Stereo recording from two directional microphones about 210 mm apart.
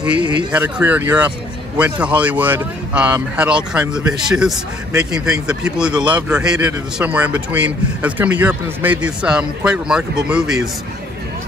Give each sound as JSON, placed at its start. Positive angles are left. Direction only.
{"t": 0.2, "sound": "speech", "side_deg": -20}
{"t": 0.5, "sound": "speech", "side_deg": -5}